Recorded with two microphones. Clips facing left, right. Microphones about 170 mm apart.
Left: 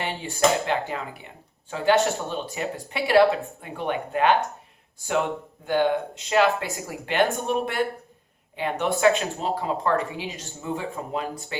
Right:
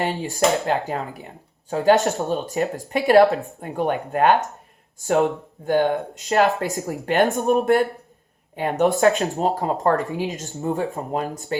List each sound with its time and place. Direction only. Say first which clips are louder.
0.0 s speech: right 3 dB; 40° right (ahead or behind)